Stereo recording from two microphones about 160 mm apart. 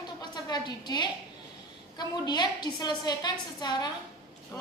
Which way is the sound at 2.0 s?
25° left (ahead or behind).